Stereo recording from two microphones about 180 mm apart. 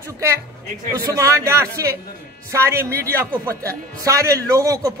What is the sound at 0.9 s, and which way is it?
A man's voice, 20° right (ahead or behind).